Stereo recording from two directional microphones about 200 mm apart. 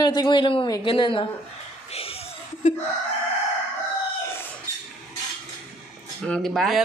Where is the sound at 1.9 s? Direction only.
30° left (ahead or behind).